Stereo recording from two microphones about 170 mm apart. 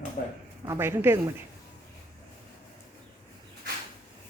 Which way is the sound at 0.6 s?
15° right (ahead or behind).